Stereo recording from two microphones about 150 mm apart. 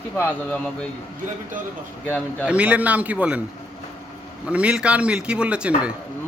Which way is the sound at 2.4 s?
10° right (ahead or behind).